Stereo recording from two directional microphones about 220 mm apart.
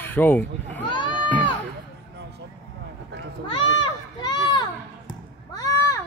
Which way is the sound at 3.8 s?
20° left (ahead or behind).